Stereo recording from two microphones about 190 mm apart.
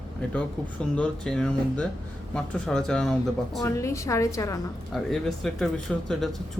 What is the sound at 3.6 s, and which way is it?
Speech, 15° left (ahead or behind).